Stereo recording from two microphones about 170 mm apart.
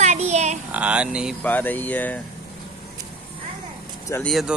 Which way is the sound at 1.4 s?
10° left (ahead or behind).